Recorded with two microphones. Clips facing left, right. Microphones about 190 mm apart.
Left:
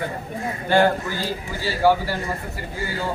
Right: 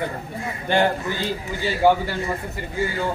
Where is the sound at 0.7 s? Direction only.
20° right (ahead or behind).